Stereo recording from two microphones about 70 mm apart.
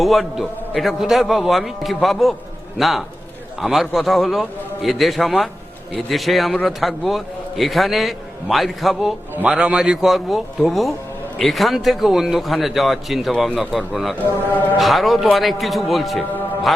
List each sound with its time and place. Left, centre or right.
0.0 s a man's voice: centre
14.3 s speech: left
14.8 s a man's voice: centre